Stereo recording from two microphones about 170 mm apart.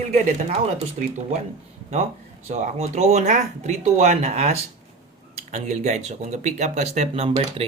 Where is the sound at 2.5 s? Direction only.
45° right (ahead or behind).